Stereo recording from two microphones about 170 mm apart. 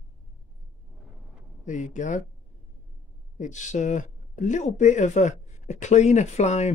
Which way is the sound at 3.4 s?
45° left (ahead or behind).